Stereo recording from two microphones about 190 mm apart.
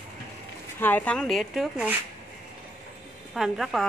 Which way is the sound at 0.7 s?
10° left (ahead or behind).